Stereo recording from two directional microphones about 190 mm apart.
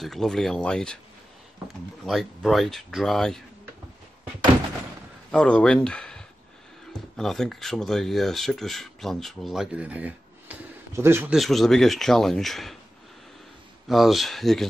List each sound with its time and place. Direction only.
0.0 s speech: centre (ahead or behind)
2.0 s speech: centre (ahead or behind)
5.3 s speech: 5° left (ahead or behind); by 11.3 s 10° right (ahead or behind)
11.3 s speech: centre (ahead or behind)
13.8 s speech: centre (ahead or behind)